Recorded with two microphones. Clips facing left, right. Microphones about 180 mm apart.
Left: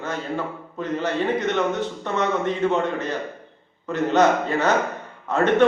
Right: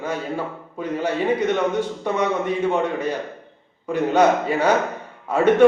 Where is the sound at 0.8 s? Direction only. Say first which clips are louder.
Right 1 dB; 10° right (ahead or behind).